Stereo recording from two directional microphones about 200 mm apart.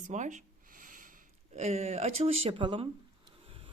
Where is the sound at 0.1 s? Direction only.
35° right (ahead or behind).